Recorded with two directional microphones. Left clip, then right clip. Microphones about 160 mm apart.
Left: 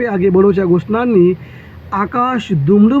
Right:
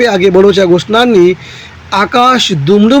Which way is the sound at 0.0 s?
35° right (ahead or behind).